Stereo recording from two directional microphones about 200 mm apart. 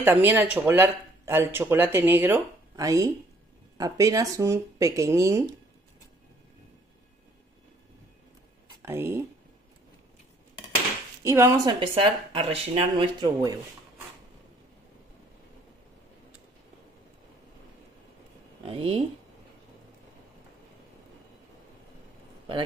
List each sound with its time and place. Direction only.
0.0 s speech: 10° right (ahead or behind)
8.8 s speech: 10° right (ahead or behind)
11.2 s speech: 15° right (ahead or behind)
18.6 s speech: 30° right (ahead or behind)